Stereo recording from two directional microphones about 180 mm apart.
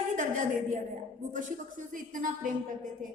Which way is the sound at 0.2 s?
45° right (ahead or behind).